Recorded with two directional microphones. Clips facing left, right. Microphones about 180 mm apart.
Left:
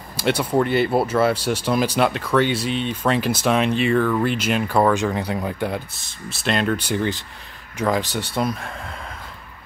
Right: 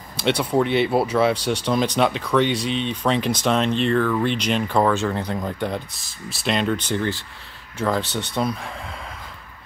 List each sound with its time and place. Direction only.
0.2 s speech: 5° left (ahead or behind)
6.9 s speech: 15° left (ahead or behind)